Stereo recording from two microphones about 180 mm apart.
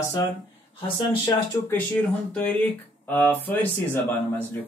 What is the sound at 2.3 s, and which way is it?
Speech, 5° left (ahead or behind).